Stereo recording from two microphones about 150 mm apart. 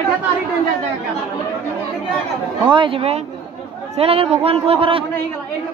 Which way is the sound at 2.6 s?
35° right (ahead or behind).